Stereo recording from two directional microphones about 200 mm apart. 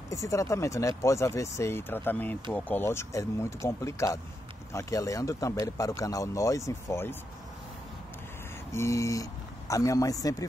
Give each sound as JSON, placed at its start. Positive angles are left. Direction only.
{"t": 0.1, "sound": "speech", "side_deg": 15}
{"t": 8.7, "sound": "speech", "side_deg": 15}